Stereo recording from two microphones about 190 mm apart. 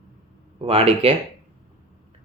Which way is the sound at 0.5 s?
30° right (ahead or behind).